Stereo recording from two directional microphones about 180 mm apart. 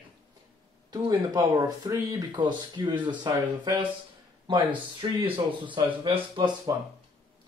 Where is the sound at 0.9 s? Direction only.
25° right (ahead or behind).